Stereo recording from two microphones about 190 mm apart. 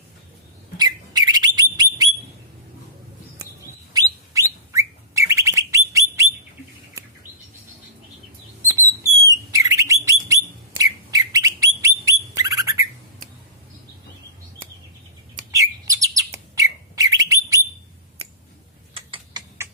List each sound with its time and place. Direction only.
0.8 s bird: 20° right (ahead or behind)
3.9 s bird: 15° right (ahead or behind)
9.5 s bird: 15° right (ahead or behind)
15.5 s bird: 20° right (ahead or behind)
18.9 s a sound: 25° right (ahead or behind)